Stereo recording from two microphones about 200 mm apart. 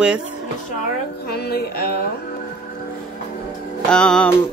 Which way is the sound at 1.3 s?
50° left (ahead or behind).